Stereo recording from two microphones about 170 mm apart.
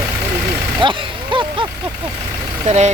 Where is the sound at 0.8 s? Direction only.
30° right (ahead or behind).